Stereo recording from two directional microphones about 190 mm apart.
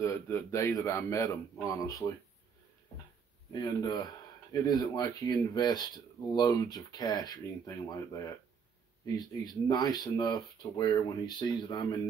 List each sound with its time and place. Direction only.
0.0 s a man's voice: 15° left (ahead or behind)
3.5 s speech: 20° left (ahead or behind)